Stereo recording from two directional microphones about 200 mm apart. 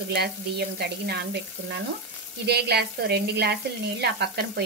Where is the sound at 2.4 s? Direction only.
55° right (ahead or behind).